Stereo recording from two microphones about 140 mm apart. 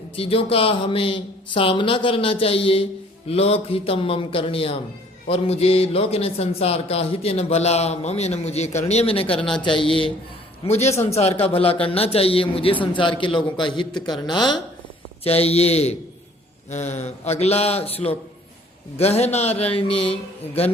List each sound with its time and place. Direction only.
0.2 s a man's voice: 40° left (ahead or behind)
10.7 s a man's voice: 50° left (ahead or behind); by 14.4 s 30° left (ahead or behind)
15.2 s a man's voice: 45° left (ahead or behind)